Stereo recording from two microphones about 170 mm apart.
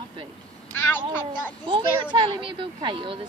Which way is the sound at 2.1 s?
30° right (ahead or behind).